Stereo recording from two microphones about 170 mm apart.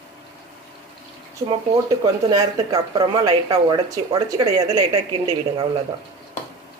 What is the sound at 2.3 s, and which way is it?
Speech, 25° right (ahead or behind).